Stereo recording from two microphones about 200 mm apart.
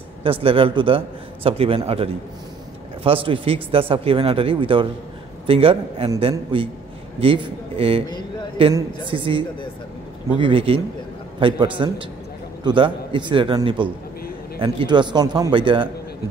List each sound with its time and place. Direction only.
0.2 s speech: 25° right (ahead or behind)